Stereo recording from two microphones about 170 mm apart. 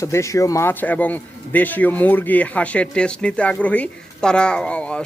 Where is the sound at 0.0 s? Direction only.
20° left (ahead or behind).